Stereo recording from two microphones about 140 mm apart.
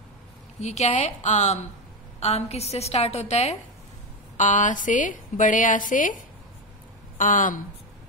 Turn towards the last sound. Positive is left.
turn(degrees=70)  # may be behind; listen again after turning